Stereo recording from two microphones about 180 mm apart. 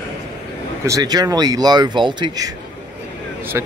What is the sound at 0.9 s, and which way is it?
Speech, 20° right (ahead or behind).